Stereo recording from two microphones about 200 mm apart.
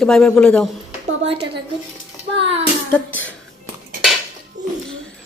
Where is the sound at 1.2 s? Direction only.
30° right (ahead or behind).